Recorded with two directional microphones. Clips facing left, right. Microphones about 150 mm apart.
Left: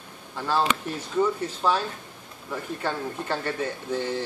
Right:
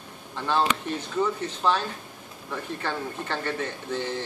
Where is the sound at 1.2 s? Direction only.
10° left (ahead or behind).